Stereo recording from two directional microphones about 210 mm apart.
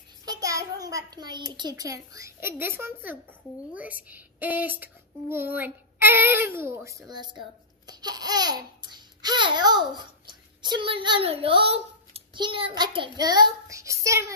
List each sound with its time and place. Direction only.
0.2 s child singing: 15° right (ahead or behind)
1.6 s a child's voice: 20° right (ahead or behind)